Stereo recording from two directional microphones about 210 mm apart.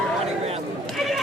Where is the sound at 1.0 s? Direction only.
Centre (ahead or behind).